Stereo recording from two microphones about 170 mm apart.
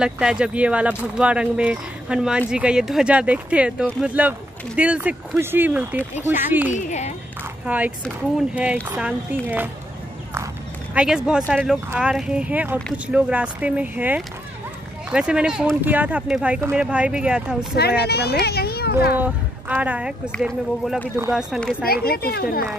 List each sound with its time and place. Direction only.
0.0 s speech: 5° right (ahead or behind)
6.7 s speech: 40° left (ahead or behind)
7.6 s speech: 10° right (ahead or behind)
11.0 s speech: 5° right (ahead or behind)
17.7 s speech: 70° left (ahead or behind)
18.4 s a sound: 70° left (ahead or behind)
19.1 s speech: 10° right (ahead or behind)
21.8 s speech: 65° left (ahead or behind)